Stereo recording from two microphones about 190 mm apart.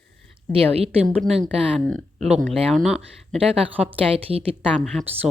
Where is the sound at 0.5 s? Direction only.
30° right (ahead or behind).